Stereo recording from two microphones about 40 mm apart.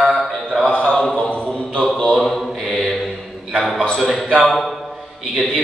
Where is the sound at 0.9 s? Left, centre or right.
Left.